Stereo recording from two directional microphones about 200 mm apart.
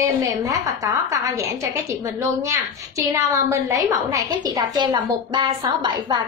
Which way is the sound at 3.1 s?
15° right (ahead or behind).